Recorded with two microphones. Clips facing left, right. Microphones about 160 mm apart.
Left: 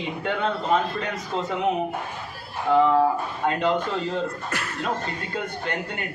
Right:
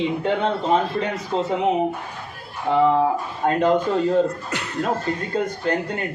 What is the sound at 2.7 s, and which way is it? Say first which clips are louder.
Speech: even; 20° right (ahead or behind).